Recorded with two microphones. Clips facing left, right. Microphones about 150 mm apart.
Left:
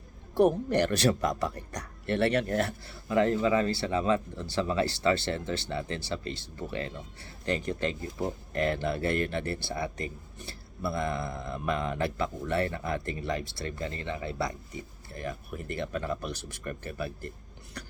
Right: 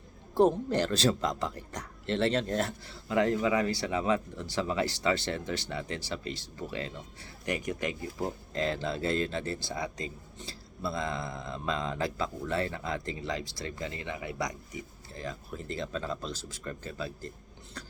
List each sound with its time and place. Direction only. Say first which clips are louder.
0.7 s speech: left 2 dB; 20° right (ahead or behind)